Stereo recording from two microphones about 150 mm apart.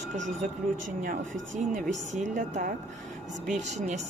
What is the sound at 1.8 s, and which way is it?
A woman's voice, 55° right (ahead or behind).